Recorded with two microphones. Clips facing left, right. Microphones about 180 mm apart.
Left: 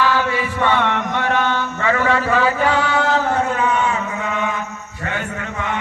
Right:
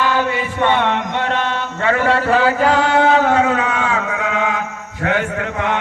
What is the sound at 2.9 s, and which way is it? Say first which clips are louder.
Chant: right 5 dB; 65° right (ahead or behind).